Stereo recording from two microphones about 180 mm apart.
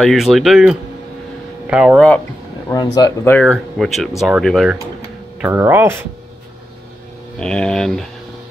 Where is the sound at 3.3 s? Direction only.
5° left (ahead or behind).